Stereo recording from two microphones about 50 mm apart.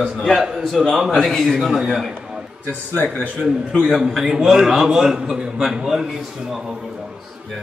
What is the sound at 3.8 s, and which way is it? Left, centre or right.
A man's voice, centre.